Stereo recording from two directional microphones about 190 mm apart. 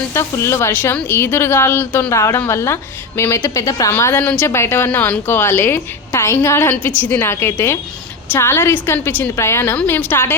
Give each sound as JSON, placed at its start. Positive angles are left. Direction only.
{"t": 0.1, "sound": "a woman's voice", "side_deg": 15}